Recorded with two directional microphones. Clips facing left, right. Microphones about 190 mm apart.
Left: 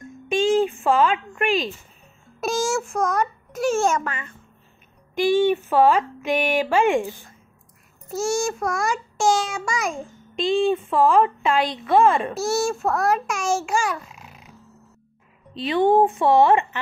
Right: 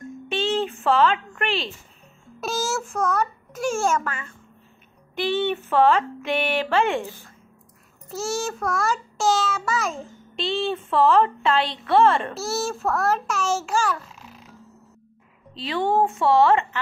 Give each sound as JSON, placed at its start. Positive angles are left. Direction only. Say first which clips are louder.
{"t": 0.3, "sound": "a sound", "louder": "left 5 dB", "side_deg": 10}
{"t": 2.7, "sound": "a child's voice", "louder": "left 2 dB", "side_deg": 10}
{"t": 5.1, "sound": "a woman's voice", "louder": "left 5 dB", "side_deg": 10}
{"t": 15.5, "sound": "a woman's voice", "louder": "left 5 dB", "side_deg": 20}